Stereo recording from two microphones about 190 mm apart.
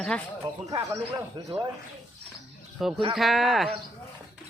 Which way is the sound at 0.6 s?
20° right (ahead or behind).